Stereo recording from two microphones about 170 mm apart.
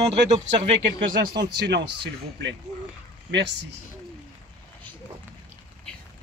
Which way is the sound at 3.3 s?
90° right.